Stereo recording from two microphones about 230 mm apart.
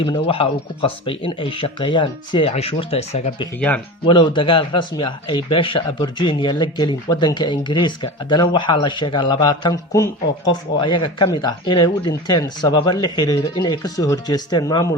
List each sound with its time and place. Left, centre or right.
0.0 s a man's voice: left